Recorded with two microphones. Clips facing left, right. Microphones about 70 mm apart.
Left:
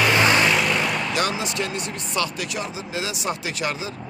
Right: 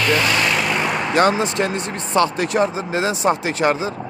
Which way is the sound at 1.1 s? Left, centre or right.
Right.